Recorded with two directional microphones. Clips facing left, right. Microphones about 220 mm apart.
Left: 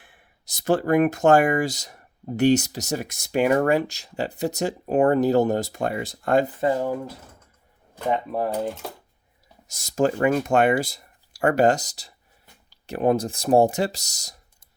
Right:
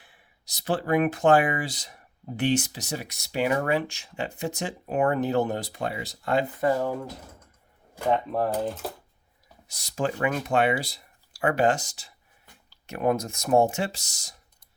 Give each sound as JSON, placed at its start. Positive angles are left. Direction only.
{"t": 0.0, "sound": "speech", "side_deg": 50}
{"t": 6.6, "sound": "speech", "side_deg": 20}
{"t": 8.1, "sound": "speech", "side_deg": 10}
{"t": 9.6, "sound": "speech", "side_deg": 45}